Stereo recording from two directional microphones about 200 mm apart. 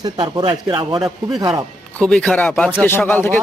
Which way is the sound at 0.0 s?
25° right (ahead or behind).